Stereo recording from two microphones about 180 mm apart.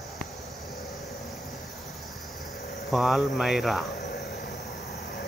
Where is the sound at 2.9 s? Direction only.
Centre (ahead or behind).